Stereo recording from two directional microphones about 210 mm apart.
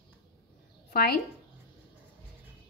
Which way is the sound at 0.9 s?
45° left (ahead or behind).